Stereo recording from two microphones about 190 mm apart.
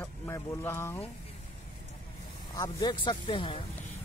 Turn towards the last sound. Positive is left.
turn(degrees=25)  # may be behind; listen again after turning